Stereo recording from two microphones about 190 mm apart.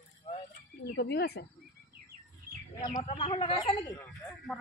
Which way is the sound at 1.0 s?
60° left (ahead or behind).